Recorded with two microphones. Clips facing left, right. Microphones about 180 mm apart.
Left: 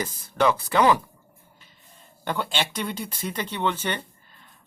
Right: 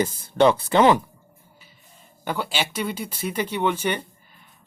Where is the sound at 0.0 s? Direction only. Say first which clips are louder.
Right 5 dB; 30° right (ahead or behind).